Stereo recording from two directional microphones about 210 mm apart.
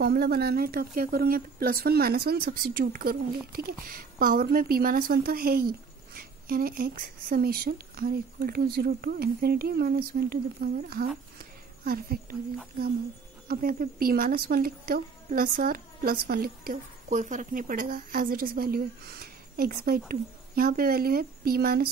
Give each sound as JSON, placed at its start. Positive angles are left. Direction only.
{"t": 0.0, "sound": "speech", "side_deg": -50}
{"t": 13.5, "sound": "speech", "side_deg": -45}